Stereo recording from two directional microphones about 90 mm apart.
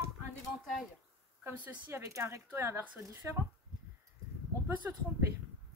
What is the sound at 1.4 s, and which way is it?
Speech, 20° right (ahead or behind).